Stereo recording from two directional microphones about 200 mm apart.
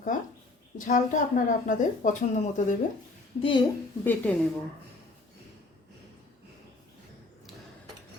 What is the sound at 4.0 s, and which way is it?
Speech, 10° left (ahead or behind).